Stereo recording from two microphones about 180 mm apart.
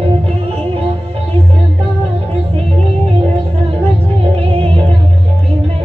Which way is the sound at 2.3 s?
35° right (ahead or behind).